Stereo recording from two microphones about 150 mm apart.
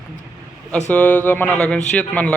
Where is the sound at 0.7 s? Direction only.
10° left (ahead or behind).